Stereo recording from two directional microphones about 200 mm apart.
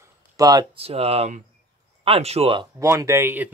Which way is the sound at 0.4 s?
20° right (ahead or behind).